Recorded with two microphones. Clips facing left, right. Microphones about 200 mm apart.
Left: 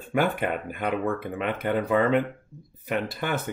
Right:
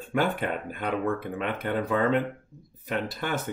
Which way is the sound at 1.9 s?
5° left (ahead or behind).